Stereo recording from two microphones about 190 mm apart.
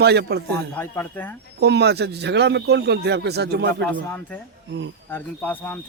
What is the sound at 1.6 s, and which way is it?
Speech, 60° right (ahead or behind).